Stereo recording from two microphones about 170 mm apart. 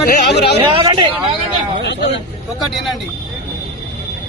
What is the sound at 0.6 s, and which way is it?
Speech, 30° right (ahead or behind).